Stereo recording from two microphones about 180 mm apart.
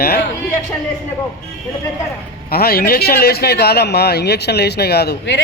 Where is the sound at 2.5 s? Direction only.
60° left (ahead or behind).